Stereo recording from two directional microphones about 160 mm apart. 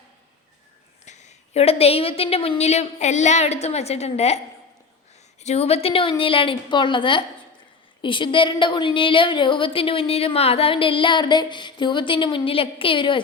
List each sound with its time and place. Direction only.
1.0 s a woman's voice: 45° left (ahead or behind)
5.4 s a woman's voice: 45° left (ahead or behind)